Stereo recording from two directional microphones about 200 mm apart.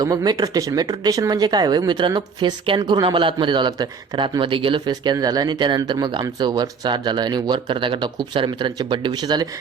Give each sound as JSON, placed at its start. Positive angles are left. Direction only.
{"t": 0.0, "sound": "speech", "side_deg": -20}